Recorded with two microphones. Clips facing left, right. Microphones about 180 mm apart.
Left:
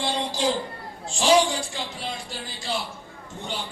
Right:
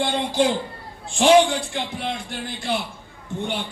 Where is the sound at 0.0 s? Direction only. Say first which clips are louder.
Right 7 dB; 55° right (ahead or behind).